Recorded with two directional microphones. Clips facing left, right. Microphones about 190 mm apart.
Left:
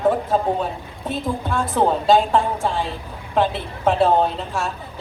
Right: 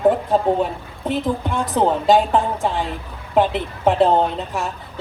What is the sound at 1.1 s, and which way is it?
A woman's voice, 15° right (ahead or behind).